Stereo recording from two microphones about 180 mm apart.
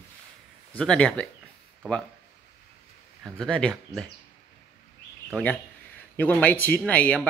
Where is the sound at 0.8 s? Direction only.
5° left (ahead or behind).